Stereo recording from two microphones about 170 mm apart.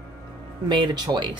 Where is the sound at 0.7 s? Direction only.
25° right (ahead or behind).